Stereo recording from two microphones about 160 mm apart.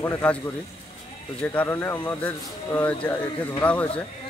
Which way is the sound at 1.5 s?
15° left (ahead or behind).